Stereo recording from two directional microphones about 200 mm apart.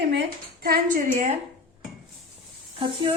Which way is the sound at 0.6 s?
45° right (ahead or behind).